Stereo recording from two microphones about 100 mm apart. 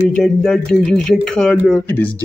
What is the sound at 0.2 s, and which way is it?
Speech, 5° left (ahead or behind).